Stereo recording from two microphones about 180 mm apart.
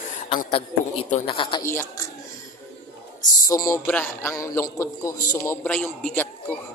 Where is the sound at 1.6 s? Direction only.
15° left (ahead or behind).